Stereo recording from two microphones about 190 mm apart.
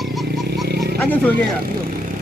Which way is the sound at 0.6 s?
60° right (ahead or behind).